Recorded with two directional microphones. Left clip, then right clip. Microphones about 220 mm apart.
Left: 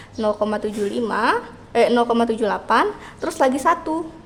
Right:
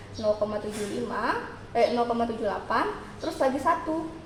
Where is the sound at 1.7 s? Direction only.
45° left (ahead or behind).